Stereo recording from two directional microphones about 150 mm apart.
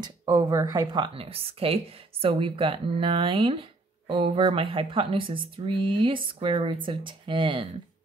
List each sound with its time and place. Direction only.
0.0 s speech: 30° right (ahead or behind)